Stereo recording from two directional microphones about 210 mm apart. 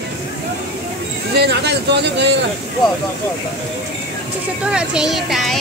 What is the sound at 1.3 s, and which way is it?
Speech, 50° right (ahead or behind).